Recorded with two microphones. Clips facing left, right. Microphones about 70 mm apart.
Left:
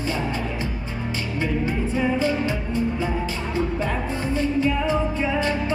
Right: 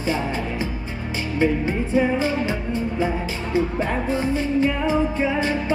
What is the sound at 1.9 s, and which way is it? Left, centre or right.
Speech, right.